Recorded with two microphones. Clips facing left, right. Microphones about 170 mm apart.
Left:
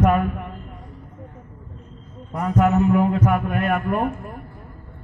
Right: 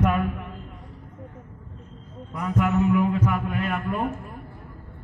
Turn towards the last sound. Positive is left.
turn(degrees=60)  # may be behind; listen again after turning